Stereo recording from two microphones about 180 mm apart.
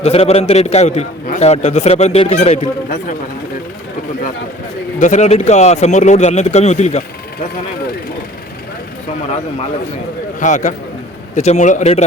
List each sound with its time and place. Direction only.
0.0 s a man's voice: 35° left (ahead or behind)
4.9 s a man's voice: 40° left (ahead or behind)
10.4 s a man's voice: 45° left (ahead or behind)